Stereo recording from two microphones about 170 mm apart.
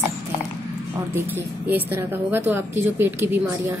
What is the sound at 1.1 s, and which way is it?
A woman's voice, 10° right (ahead or behind).